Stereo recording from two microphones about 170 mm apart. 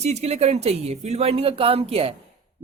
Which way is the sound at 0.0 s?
40° right (ahead or behind).